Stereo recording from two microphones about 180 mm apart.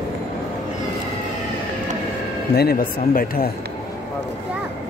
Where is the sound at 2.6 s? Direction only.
55° left (ahead or behind).